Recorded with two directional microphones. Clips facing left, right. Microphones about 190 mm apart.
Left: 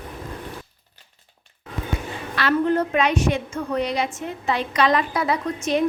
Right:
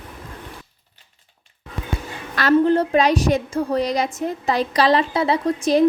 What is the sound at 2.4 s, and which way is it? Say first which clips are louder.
A woman's voice: right 4 dB; 35° right (ahead or behind).